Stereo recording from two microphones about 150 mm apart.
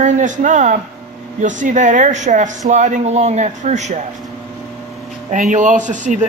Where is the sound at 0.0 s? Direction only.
55° right (ahead or behind).